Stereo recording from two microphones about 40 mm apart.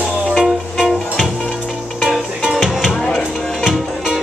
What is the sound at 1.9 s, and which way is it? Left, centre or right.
Music, centre.